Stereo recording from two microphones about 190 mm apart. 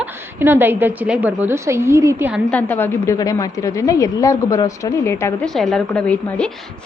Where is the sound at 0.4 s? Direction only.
10° right (ahead or behind).